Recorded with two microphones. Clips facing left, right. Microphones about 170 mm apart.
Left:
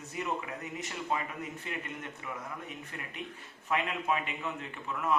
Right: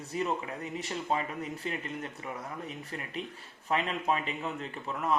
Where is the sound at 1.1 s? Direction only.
30° right (ahead or behind).